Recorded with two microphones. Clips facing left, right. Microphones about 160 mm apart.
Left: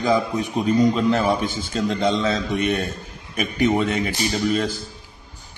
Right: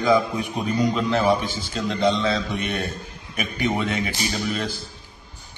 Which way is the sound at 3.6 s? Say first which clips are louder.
Left 4 dB; 40° left (ahead or behind).